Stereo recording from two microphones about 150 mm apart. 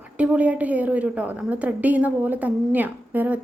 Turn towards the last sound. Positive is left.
turn(degrees=-10)  # may be behind; listen again after turning